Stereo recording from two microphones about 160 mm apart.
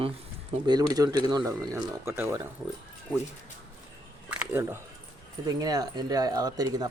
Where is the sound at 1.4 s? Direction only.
15° right (ahead or behind).